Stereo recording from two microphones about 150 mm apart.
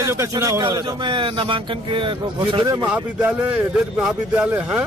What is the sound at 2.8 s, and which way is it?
Speech, 10° right (ahead or behind).